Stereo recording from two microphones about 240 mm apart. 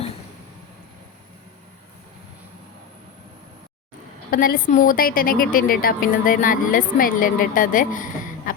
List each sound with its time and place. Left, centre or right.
4.3 s a woman's voice: left
8.5 s beatboxing: left